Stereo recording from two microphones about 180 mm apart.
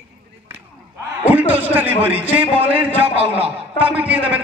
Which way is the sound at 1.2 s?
10° right (ahead or behind).